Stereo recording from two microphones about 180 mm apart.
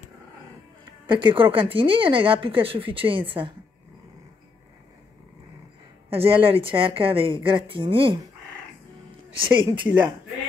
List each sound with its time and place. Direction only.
1.0 s speech: 25° right (ahead or behind)
6.0 s speech: 30° right (ahead or behind)
9.4 s speech: 25° right (ahead or behind)